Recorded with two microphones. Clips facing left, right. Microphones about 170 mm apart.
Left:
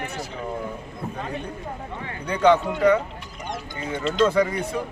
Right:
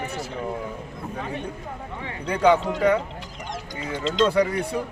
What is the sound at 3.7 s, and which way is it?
Speech, 90° right.